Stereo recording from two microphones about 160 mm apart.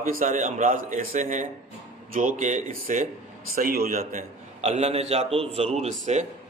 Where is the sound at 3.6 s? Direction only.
65° right (ahead or behind).